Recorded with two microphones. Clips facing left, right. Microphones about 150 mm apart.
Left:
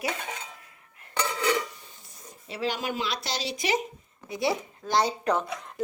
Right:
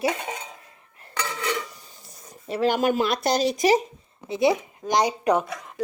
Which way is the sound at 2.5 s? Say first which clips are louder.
Right 9 dB; 50° right (ahead or behind).